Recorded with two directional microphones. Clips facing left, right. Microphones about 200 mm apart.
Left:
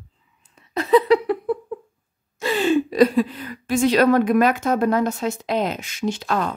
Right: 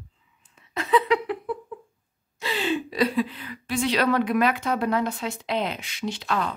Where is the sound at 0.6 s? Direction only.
40° left (ahead or behind).